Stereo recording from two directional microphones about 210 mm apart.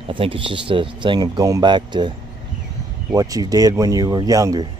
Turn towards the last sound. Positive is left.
turn(degrees=-15)  # may be behind; listen again after turning